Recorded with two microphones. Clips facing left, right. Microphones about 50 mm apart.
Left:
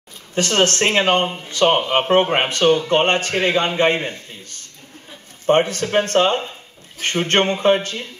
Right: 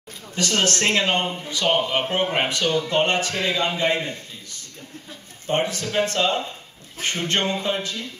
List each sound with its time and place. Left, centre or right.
0.3 s speech: left
1.2 s speech: left